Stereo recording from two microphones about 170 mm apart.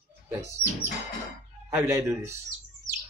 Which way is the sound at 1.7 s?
15° right (ahead or behind).